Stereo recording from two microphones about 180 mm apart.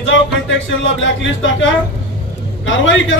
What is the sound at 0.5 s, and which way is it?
Speech, 90° left.